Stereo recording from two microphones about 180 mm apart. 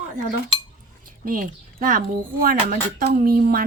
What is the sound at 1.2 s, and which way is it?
A woman's voice, 50° right (ahead or behind).